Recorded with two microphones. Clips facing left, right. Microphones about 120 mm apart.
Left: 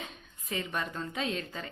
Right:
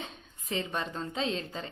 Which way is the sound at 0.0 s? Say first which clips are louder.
Right 1 dB; 30° right (ahead or behind).